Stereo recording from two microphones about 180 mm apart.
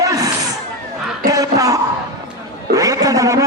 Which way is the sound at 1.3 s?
20° right (ahead or behind).